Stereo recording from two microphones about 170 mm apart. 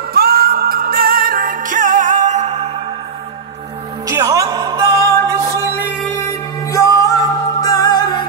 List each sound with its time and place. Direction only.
0.1 s music: 65° right (ahead or behind); by 2.7 s 40° right (ahead or behind)
4.1 s music: 20° right (ahead or behind)
6.1 s music: 20° left (ahead or behind)